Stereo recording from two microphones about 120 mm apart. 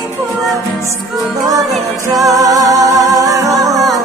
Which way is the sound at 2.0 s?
30° right (ahead or behind).